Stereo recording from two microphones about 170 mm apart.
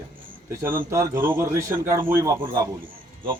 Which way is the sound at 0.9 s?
15° right (ahead or behind).